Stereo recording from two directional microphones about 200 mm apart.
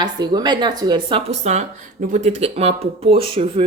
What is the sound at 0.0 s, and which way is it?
A woman's voice, 20° right (ahead or behind).